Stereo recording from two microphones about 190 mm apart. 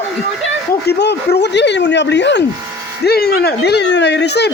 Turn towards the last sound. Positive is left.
turn(degrees=60)  # may be behind; listen again after turning